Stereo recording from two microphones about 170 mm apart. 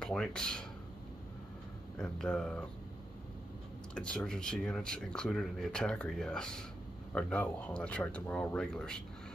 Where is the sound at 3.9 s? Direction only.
5° left (ahead or behind).